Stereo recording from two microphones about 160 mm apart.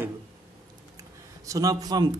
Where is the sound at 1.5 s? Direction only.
20° right (ahead or behind).